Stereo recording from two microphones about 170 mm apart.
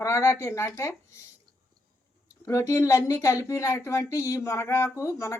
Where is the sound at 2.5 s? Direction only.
15° left (ahead or behind).